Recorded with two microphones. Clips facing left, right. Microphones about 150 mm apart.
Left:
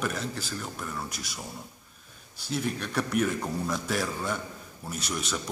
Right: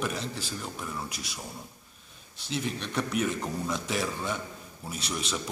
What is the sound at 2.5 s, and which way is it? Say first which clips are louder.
A man's voice: left 2 dB; 5° left (ahead or behind).